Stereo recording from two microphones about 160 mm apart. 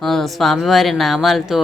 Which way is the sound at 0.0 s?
Centre (ahead or behind).